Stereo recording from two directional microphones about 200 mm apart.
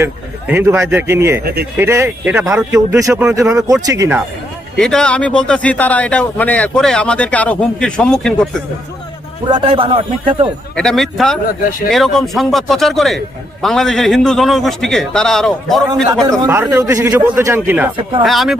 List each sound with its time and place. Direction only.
0.0 s a man's voice: 10° right (ahead or behind)
4.7 s a man's voice: 5° left (ahead or behind)
9.5 s a man's voice: 25° right (ahead or behind)
10.8 s a man's voice: centre (ahead or behind)
16.3 s a man's voice: 15° right (ahead or behind)